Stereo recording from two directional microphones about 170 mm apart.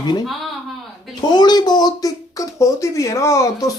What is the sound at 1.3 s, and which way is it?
Speech, 25° left (ahead or behind).